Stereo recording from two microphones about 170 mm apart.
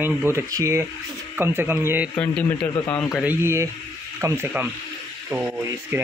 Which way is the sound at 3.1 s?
5° right (ahead or behind).